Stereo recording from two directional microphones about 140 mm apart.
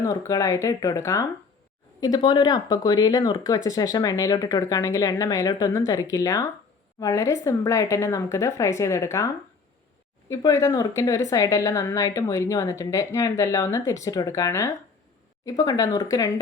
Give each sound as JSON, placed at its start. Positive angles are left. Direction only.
{"t": 0.0, "sound": "a woman's voice", "side_deg": 25}